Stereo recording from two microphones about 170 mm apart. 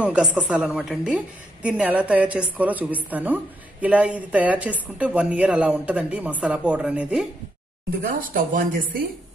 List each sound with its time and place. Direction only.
0.0 s a woman's voice: 5° right (ahead or behind)
8.0 s a woman's voice: 55° right (ahead or behind)